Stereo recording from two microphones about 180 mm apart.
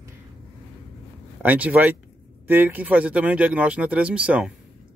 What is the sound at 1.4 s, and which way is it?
Speech, 10° right (ahead or behind).